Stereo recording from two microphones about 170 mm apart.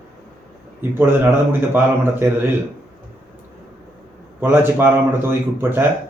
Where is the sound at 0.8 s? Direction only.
15° right (ahead or behind).